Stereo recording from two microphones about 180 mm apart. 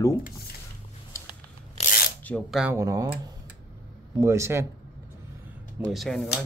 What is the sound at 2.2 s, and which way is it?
Speech, 5° left (ahead or behind).